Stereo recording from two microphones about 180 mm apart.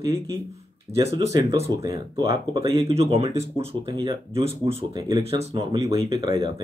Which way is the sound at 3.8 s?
20° right (ahead or behind).